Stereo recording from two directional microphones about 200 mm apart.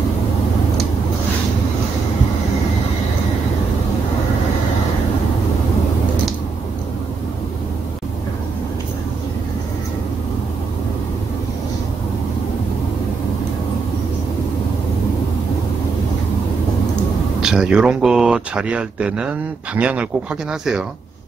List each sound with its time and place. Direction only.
17.4 s speech: 5° right (ahead or behind)